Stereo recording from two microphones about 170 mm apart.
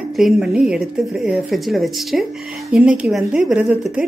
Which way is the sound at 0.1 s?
Centre (ahead or behind).